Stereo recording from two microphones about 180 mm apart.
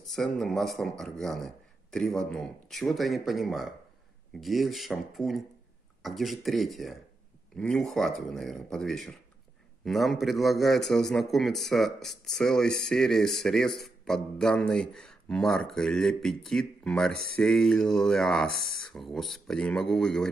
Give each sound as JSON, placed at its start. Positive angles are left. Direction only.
{"t": 0.0, "sound": "a man's voice", "side_deg": 0}